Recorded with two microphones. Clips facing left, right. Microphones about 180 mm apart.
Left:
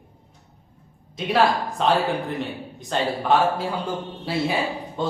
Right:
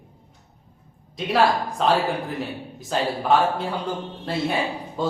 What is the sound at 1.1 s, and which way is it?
Speech, centre (ahead or behind).